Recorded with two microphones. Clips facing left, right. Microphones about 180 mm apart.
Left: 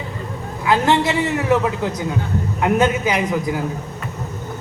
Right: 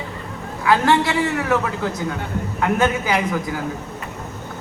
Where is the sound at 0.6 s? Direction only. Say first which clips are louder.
Even; 20° left (ahead or behind).